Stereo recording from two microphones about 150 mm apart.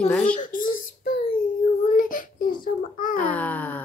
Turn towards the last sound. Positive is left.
turn(degrees=10)  # may be behind; listen again after turning